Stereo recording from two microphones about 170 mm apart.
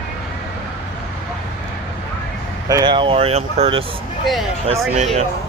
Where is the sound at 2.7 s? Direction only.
25° right (ahead or behind).